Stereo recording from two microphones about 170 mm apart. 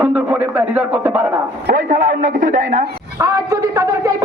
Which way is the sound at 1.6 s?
50° right (ahead or behind).